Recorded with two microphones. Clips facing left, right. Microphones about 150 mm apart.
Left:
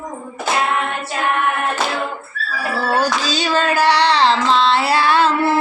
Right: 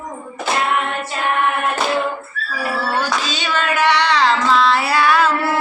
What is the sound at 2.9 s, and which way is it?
Child singing, 35° left (ahead or behind).